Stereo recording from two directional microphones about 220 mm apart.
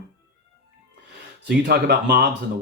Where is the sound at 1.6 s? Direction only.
45° right (ahead or behind).